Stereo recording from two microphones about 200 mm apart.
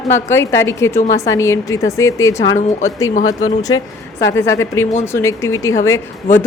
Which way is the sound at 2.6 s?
35° left (ahead or behind).